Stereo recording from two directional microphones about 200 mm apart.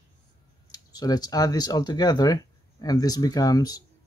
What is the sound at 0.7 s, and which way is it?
Speech, 20° left (ahead or behind).